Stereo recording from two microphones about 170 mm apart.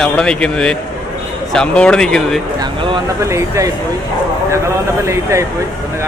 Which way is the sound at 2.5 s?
30° right (ahead or behind).